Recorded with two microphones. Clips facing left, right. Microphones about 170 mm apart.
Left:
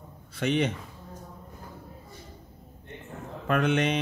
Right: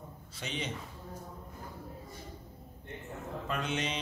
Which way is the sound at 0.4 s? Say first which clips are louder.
Left 13 dB; 60° left (ahead or behind).